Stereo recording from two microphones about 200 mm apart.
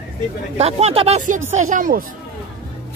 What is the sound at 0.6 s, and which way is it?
Speech, 30° right (ahead or behind).